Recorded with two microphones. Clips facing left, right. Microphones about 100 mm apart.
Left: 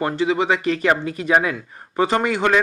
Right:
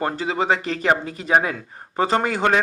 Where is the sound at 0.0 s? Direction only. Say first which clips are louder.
Left 3 dB; 35° right (ahead or behind).